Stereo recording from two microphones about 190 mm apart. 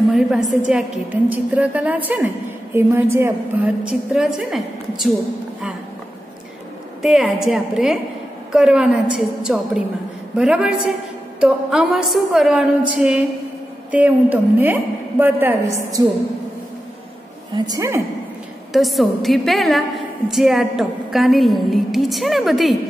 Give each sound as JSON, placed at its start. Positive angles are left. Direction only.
{"t": 0.6, "sound": "a woman's voice", "side_deg": -5}
{"t": 7.0, "sound": "a woman's voice", "side_deg": 0}
{"t": 17.6, "sound": "a woman's voice", "side_deg": -15}
{"t": 18.7, "sound": "a woman's voice", "side_deg": 0}